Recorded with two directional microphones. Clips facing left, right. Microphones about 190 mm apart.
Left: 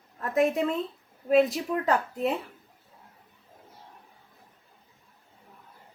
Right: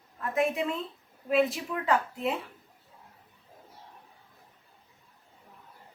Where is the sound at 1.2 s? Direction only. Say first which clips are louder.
Left 4 dB; 40° left (ahead or behind).